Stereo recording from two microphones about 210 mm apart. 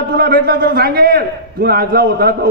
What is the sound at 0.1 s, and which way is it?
A man's voice, 45° right (ahead or behind).